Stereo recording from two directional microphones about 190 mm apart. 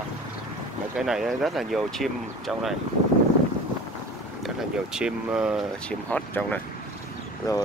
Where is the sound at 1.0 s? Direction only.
Centre (ahead or behind).